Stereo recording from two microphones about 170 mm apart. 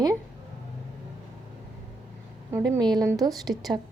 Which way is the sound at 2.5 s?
20° right (ahead or behind).